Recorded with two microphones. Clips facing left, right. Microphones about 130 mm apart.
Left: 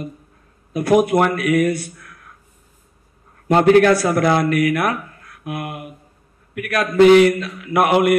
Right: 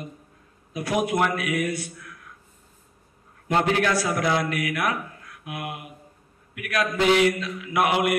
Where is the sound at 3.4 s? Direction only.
55° left (ahead or behind).